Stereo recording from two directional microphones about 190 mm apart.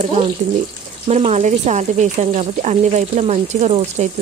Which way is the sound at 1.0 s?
35° right (ahead or behind).